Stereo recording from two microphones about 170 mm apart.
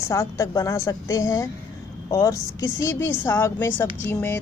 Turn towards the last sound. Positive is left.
turn(degrees=10)  # may be behind; listen again after turning